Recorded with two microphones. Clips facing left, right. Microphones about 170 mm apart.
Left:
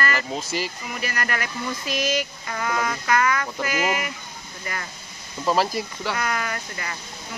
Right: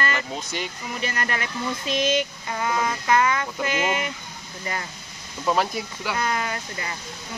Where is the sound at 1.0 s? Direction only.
25° right (ahead or behind).